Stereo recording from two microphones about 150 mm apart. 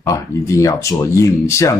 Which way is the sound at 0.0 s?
20° left (ahead or behind).